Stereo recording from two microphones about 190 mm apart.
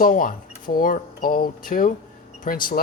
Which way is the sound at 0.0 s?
45° left (ahead or behind).